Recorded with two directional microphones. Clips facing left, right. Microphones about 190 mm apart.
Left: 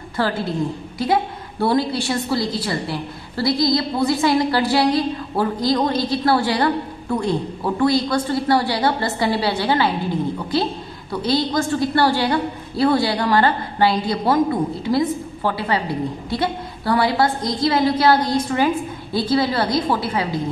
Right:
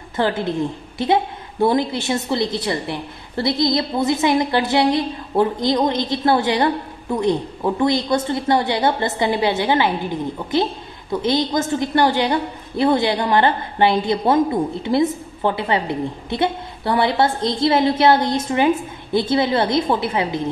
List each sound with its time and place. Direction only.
0.1 s a woman's voice: 20° right (ahead or behind)
11.1 s a woman's voice: 20° right (ahead or behind)